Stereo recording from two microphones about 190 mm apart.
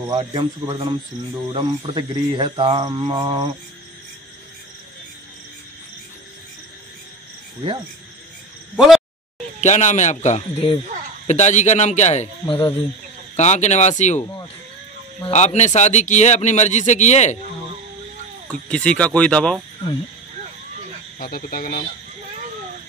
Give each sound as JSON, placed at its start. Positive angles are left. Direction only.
{"t": 0.1, "sound": "speech", "side_deg": -30}
{"t": 7.6, "sound": "speech", "side_deg": -25}
{"t": 8.7, "sound": "speech", "side_deg": 0}
{"t": 9.6, "sound": "speech", "side_deg": 40}
{"t": 15.2, "sound": "speech", "side_deg": 35}
{"t": 18.5, "sound": "speech", "side_deg": 5}
{"t": 21.2, "sound": "speech", "side_deg": 50}